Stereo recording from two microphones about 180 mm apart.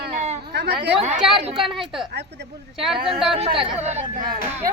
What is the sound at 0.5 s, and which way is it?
Speech, 70° right (ahead or behind).